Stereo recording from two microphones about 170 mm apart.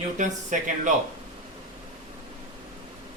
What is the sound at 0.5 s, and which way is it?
Speech, 50° right (ahead or behind).